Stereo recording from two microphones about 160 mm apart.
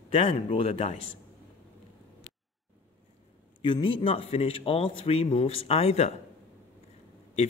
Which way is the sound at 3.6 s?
30° left (ahead or behind).